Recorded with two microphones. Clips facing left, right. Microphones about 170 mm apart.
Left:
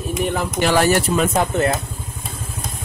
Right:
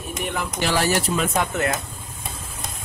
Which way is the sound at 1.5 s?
30° left (ahead or behind).